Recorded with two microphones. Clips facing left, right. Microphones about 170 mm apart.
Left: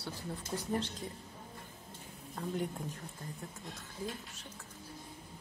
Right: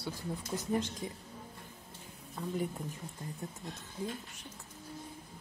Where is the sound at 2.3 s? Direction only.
5° right (ahead or behind).